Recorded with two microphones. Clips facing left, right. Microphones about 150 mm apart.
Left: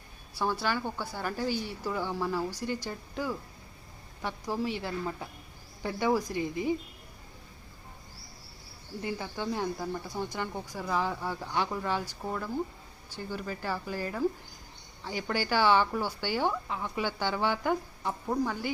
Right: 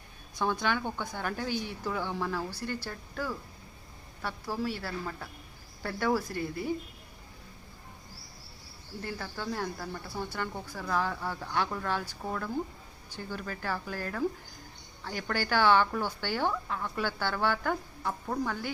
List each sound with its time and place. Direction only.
0.3 s speech: 5° left (ahead or behind)
9.0 s speech: 10° left (ahead or behind)